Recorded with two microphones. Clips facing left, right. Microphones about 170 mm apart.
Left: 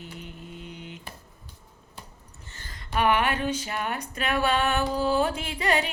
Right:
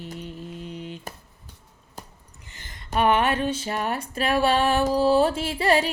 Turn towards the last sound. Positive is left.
turn(degrees=-30)  # may be behind; listen again after turning